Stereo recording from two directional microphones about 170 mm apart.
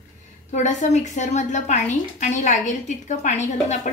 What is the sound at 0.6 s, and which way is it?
A woman's voice, 45° left (ahead or behind).